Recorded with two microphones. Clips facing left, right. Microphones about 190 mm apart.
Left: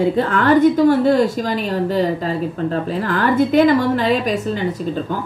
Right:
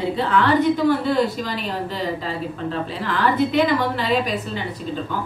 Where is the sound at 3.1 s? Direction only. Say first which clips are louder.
Left 4 dB; 45° left (ahead or behind).